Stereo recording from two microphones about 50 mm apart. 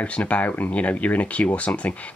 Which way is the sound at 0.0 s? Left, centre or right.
Left.